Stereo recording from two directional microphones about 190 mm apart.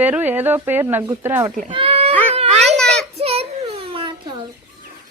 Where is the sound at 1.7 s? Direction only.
30° right (ahead or behind).